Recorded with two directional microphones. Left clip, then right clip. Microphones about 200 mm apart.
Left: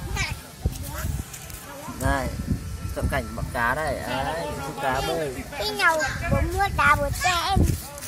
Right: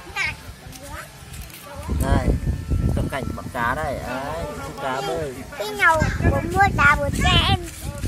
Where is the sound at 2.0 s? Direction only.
Centre (ahead or behind).